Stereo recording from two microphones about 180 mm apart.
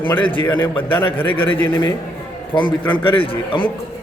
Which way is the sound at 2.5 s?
25° left (ahead or behind).